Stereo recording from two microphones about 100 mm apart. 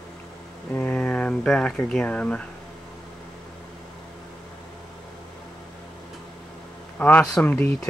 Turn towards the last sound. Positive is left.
turn(degrees=15)  # may be behind; listen again after turning